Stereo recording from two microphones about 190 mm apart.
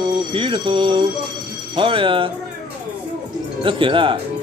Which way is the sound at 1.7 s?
25° right (ahead or behind).